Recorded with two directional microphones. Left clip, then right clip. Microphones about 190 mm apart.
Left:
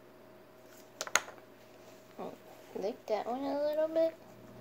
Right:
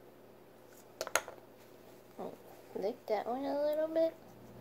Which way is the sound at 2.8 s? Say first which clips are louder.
Left 1 dB; centre (ahead or behind).